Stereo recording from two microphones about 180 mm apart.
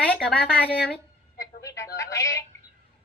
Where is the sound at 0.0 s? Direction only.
5° left (ahead or behind).